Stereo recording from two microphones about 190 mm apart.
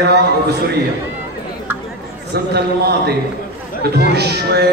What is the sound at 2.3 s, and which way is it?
Speech, 55° right (ahead or behind).